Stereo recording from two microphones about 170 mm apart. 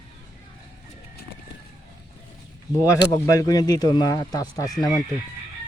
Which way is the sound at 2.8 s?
20° left (ahead or behind).